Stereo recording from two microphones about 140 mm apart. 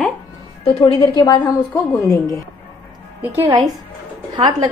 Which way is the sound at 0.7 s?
40° left (ahead or behind).